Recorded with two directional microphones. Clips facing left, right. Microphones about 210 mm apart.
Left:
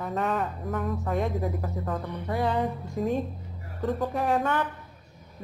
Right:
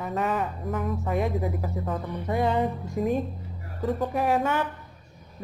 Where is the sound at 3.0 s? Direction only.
10° right (ahead or behind).